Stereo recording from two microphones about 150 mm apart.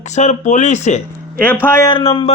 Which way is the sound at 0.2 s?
50° left (ahead or behind).